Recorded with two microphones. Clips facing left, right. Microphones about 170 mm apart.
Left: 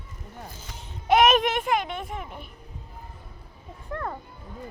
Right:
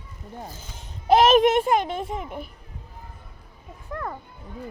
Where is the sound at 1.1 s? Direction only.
30° right (ahead or behind).